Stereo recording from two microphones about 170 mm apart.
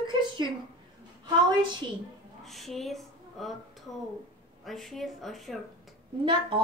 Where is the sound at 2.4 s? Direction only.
Centre (ahead or behind).